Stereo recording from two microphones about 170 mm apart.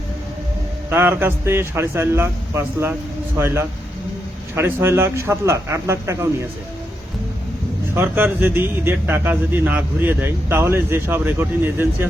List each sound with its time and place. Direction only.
0.9 s a man's voice: 10° right (ahead or behind)
7.9 s a man's voice: 10° right (ahead or behind)